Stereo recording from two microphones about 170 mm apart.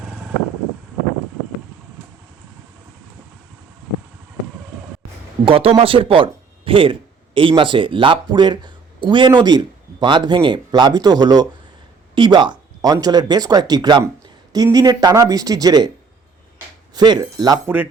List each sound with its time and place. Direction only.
5.5 s speech: 35° right (ahead or behind)
16.9 s speech: 25° right (ahead or behind)